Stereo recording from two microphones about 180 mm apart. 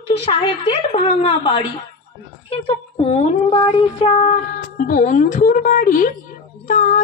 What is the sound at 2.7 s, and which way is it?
A woman's voice, 35° left (ahead or behind).